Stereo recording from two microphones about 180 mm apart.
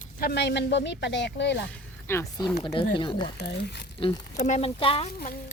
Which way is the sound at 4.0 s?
30° left (ahead or behind).